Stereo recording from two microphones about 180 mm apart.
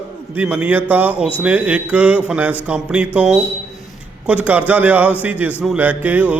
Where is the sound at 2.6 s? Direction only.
5° right (ahead or behind).